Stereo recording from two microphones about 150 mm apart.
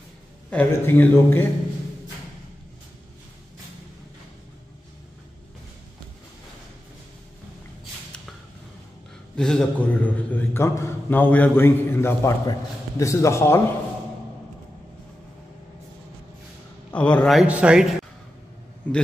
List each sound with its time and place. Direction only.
0.5 s a man's voice: 10° left (ahead or behind)
9.4 s a man's voice: 5° left (ahead or behind)
16.9 s a man's voice: 10° left (ahead or behind); by 17.8 s 10° right (ahead or behind)
18.9 s a man's voice: 10° left (ahead or behind)